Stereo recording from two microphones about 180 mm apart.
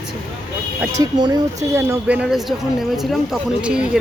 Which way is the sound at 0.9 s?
20° right (ahead or behind).